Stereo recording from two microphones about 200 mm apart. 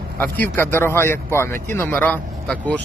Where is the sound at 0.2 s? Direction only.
10° left (ahead or behind).